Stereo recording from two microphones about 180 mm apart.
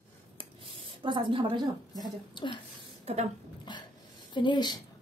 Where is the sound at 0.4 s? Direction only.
30° right (ahead or behind).